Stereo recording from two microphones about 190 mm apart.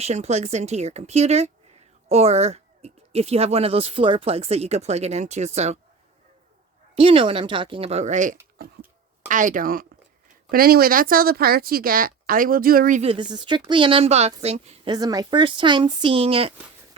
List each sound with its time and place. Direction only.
0.0 s speech: 35° right (ahead or behind)
6.9 s speech: 30° right (ahead or behind); by 13.0 s 50° right (ahead or behind)
13.0 s speech: 30° right (ahead or behind)
14.9 s speech: 20° right (ahead or behind)